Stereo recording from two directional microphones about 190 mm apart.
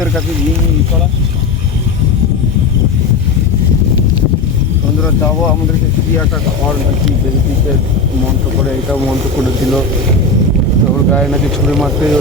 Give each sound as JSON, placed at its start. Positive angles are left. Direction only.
{"t": 11.1, "sound": "speech", "side_deg": 0}